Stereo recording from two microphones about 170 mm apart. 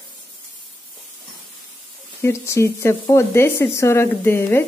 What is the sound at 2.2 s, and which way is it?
Speech, 15° left (ahead or behind).